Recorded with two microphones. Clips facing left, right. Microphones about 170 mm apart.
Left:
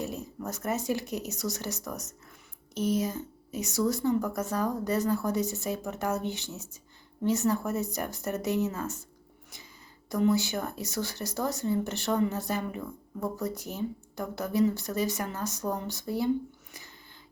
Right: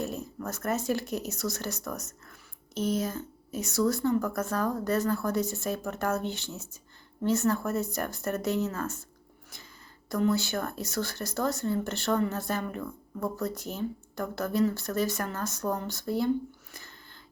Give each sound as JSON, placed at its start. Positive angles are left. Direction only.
{"t": 0.0, "sound": "speech", "side_deg": 15}
{"t": 10.1, "sound": "speech", "side_deg": 15}